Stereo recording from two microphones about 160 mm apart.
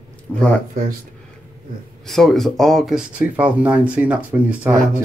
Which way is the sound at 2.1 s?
Centre (ahead or behind).